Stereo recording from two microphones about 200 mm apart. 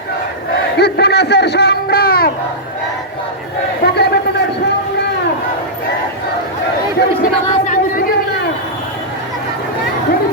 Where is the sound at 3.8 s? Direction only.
55° left (ahead or behind).